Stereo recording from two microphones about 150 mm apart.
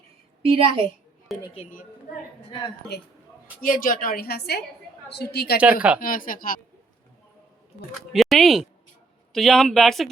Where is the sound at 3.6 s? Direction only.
65° left (ahead or behind); by 5.6 s 90° left.